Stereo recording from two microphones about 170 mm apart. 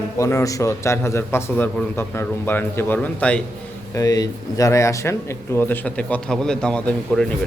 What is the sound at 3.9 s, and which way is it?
Speech, 20° left (ahead or behind).